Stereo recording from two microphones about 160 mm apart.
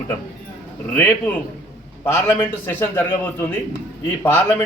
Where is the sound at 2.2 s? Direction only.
15° left (ahead or behind).